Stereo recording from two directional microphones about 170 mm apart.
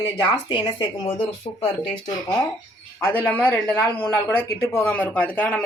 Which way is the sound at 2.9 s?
15° left (ahead or behind).